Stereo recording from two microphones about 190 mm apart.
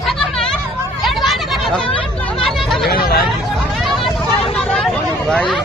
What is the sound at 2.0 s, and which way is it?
Chatter, 5° left (ahead or behind).